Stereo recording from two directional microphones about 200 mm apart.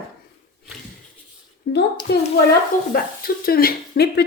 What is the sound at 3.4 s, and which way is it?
Speech, 50° left (ahead or behind).